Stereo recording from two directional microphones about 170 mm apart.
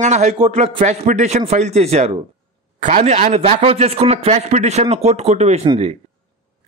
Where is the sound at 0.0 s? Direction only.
45° right (ahead or behind).